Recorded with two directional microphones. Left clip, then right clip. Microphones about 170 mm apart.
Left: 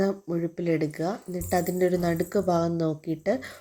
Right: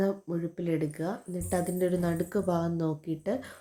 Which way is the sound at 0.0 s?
20° left (ahead or behind).